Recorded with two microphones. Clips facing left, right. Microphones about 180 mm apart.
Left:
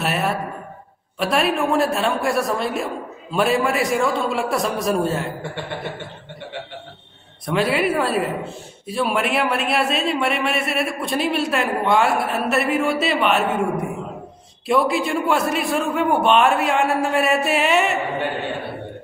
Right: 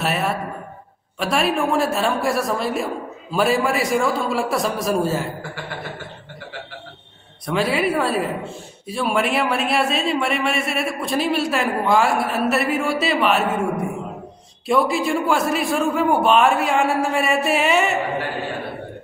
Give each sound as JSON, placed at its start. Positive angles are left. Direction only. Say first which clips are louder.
{"t": 0.0, "sound": "a sound", "louder": "even", "side_deg": 0}
{"t": 1.2, "sound": "a man's voice", "louder": "even", "side_deg": 0}
{"t": 7.4, "sound": "a man's voice", "louder": "left 1 dB", "side_deg": 0}